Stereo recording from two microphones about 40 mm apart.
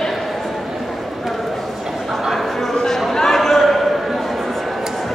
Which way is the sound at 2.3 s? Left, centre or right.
Centre.